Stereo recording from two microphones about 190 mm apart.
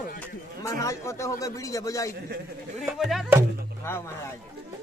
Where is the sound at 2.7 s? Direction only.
Centre (ahead or behind).